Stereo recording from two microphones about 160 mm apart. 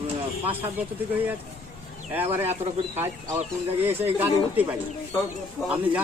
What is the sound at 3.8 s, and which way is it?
Speech, 10° right (ahead or behind).